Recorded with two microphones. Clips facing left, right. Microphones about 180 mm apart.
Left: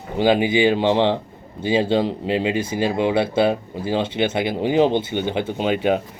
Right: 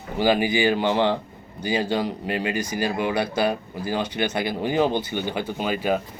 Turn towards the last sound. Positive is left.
turn(degrees=25)  # may be behind; listen again after turning